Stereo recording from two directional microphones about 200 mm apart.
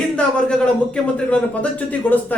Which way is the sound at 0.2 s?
5° left (ahead or behind).